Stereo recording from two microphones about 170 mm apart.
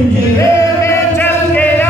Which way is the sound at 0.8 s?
10° left (ahead or behind).